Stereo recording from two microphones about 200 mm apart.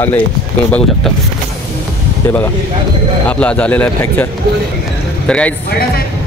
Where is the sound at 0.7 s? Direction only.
5° left (ahead or behind).